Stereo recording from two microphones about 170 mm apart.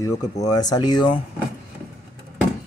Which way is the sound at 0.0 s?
20° left (ahead or behind).